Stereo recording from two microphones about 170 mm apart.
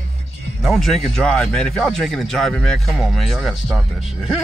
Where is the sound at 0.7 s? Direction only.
Centre (ahead or behind).